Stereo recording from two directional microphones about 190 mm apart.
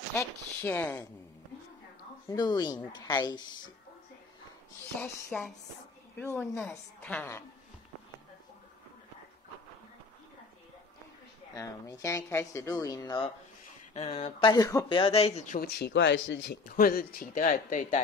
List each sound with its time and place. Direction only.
0.1 s speech: 15° left (ahead or behind)
2.2 s speech: 20° left (ahead or behind)
5.0 s speech: 10° left (ahead or behind)
11.5 s speech: 15° left (ahead or behind)
13.9 s speech: 30° left (ahead or behind)
15.8 s speech: 75° left (ahead or behind)
16.6 s speech: 50° left (ahead or behind)